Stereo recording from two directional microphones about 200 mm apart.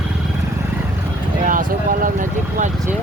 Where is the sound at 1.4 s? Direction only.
40° right (ahead or behind).